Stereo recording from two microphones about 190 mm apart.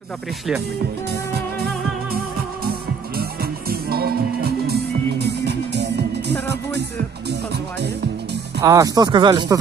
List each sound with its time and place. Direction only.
3.2 s music: 55° right (ahead or behind)
8.5 s speech: 15° right (ahead or behind)